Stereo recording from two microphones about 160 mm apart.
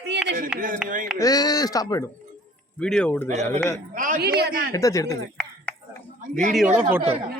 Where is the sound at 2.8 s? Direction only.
5° left (ahead or behind).